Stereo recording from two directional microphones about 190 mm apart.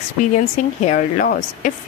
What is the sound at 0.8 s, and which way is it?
Speech, 45° left (ahead or behind).